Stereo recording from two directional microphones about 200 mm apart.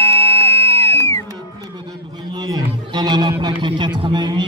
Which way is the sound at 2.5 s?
20° right (ahead or behind).